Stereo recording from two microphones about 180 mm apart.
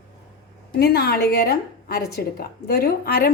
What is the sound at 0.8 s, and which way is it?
A woman's voice, 60° left (ahead or behind).